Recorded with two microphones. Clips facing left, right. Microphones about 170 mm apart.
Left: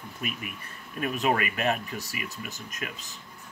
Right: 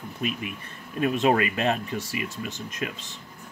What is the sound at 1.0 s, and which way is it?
Speech, 30° right (ahead or behind).